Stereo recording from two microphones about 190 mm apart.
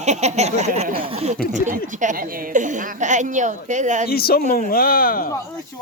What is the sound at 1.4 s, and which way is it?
A woman's voice, 45° right (ahead or behind).